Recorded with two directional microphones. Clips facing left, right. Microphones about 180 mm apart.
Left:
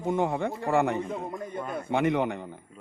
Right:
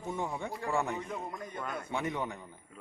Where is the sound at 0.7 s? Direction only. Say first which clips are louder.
Left 8 dB; 65° left (ahead or behind).